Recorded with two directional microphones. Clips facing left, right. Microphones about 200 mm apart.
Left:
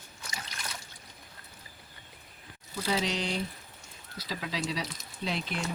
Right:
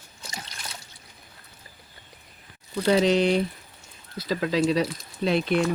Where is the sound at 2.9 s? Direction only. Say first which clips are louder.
Right 11 dB; 60° right (ahead or behind).